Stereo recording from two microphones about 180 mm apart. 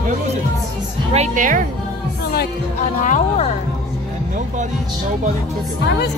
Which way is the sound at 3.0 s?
40° left (ahead or behind).